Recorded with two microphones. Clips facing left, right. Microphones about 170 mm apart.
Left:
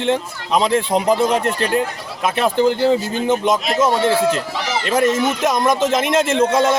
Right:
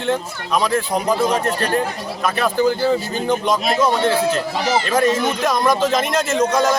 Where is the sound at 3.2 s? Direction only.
20° left (ahead or behind).